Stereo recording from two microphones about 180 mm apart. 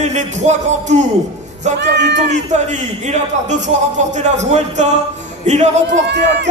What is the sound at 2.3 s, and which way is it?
A man's voice, 40° right (ahead or behind).